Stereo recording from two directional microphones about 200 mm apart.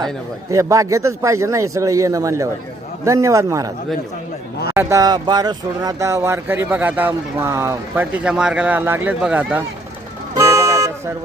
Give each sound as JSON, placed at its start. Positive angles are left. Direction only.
{"t": 0.5, "sound": "speech", "side_deg": -15}
{"t": 4.7, "sound": "speech", "side_deg": -15}
{"t": 10.3, "sound": "music", "side_deg": -15}